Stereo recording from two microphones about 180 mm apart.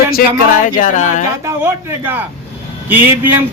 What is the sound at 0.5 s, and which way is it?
Speech, 45° left (ahead or behind).